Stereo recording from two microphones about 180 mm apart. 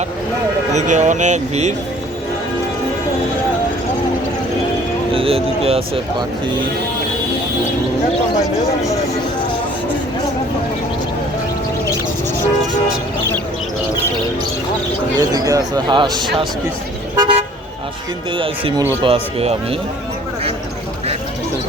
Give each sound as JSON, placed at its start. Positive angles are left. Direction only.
{"t": 0.7, "sound": "speech", "side_deg": -40}
{"t": 5.1, "sound": "speech", "side_deg": -30}
{"t": 15.2, "sound": "speech", "side_deg": -20}
{"t": 17.2, "sound": "car", "side_deg": -30}
{"t": 18.3, "sound": "speech", "side_deg": -30}